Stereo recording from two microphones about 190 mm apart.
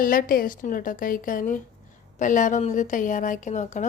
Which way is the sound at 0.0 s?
50° left (ahead or behind).